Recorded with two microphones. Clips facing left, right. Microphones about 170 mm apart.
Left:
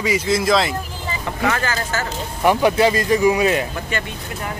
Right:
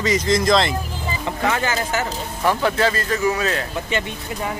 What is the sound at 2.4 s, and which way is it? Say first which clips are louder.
Speech: left 4 dB; 15° left (ahead or behind).